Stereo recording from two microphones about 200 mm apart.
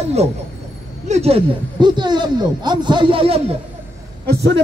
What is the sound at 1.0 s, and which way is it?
Speech, 30° right (ahead or behind).